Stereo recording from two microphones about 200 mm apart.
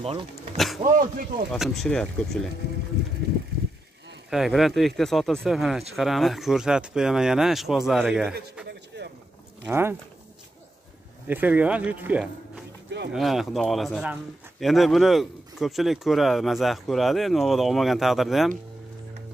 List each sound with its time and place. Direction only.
0.0 s speech: 30° right (ahead or behind)
1.1 s speech: 45° right (ahead or behind)
1.5 s speech: centre (ahead or behind)
4.3 s speech: centre (ahead or behind)
8.6 s a sound: 55° right (ahead or behind)
9.7 s speech: 10° right (ahead or behind)
11.2 s speech: 10° right (ahead or behind)